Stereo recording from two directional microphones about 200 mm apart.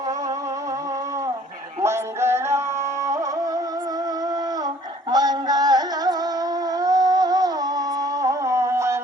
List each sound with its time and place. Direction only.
1.8 s music: 15° right (ahead or behind)
5.1 s music: 20° right (ahead or behind)